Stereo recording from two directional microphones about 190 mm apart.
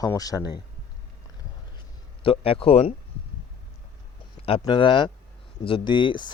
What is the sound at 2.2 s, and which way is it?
Speech, 30° left (ahead or behind).